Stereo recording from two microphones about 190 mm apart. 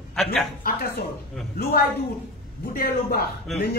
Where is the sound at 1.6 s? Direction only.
55° left (ahead or behind).